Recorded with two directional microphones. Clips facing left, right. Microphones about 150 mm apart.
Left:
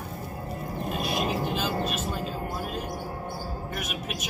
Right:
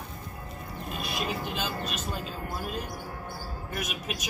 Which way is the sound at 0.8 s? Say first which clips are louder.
Left 5 dB; 40° left (ahead or behind).